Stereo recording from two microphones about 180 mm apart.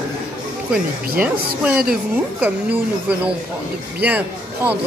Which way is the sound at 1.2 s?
5° right (ahead or behind).